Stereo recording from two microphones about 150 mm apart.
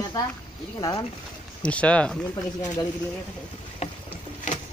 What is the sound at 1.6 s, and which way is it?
Speech, 10° left (ahead or behind).